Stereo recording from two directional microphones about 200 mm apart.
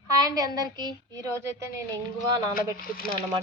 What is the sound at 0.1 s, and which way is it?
Speech, 20° right (ahead or behind).